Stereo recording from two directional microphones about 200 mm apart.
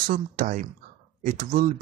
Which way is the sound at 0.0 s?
45° right (ahead or behind).